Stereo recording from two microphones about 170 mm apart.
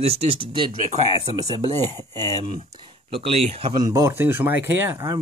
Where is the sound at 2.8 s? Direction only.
30° right (ahead or behind).